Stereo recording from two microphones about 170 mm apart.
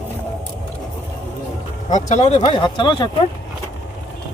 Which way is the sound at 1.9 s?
45° left (ahead or behind).